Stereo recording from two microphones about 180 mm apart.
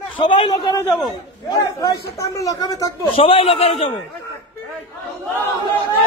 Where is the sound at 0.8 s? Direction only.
5° left (ahead or behind).